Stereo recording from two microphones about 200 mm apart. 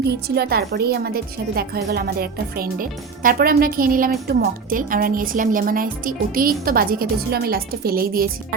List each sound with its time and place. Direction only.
0.0 s a woman's voice: 55° right (ahead or behind)